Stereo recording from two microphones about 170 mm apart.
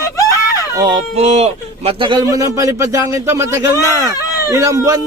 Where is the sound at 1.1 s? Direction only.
40° right (ahead or behind).